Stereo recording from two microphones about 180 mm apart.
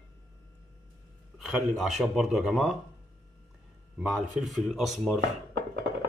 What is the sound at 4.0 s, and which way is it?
Speech, 5° right (ahead or behind).